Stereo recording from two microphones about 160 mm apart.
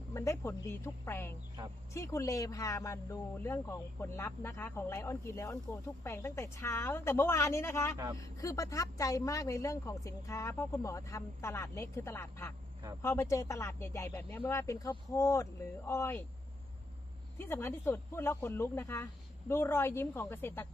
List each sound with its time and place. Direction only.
0.1 s speech: 20° left (ahead or behind)
17.3 s speech: 15° left (ahead or behind)